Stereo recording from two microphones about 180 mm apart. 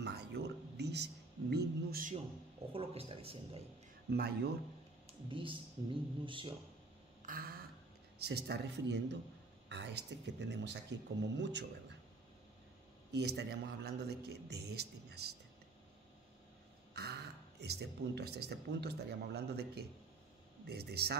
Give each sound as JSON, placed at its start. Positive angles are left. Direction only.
{"t": 0.0, "sound": "a sound", "side_deg": -65}
{"t": 2.7, "sound": "a man's voice", "side_deg": -30}
{"t": 4.1, "sound": "a man's voice", "side_deg": -55}
{"t": 5.3, "sound": "speech", "side_deg": -30}
{"t": 7.2, "sound": "a sound", "side_deg": -55}
{"t": 8.2, "sound": "speech", "side_deg": -65}
{"t": 13.1, "sound": "a man's voice", "side_deg": -70}
{"t": 16.9, "sound": "a man's voice", "side_deg": -65}